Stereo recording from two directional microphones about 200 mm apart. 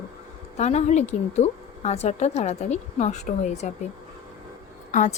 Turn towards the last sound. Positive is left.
turn(degrees=40)  # may be behind; listen again after turning